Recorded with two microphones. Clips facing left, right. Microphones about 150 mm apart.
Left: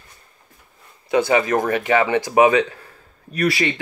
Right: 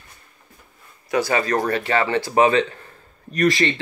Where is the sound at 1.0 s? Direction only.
20° left (ahead or behind).